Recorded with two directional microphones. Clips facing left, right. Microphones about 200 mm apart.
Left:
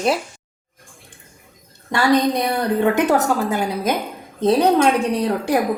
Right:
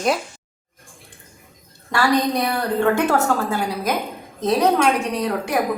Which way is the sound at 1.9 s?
20° left (ahead or behind).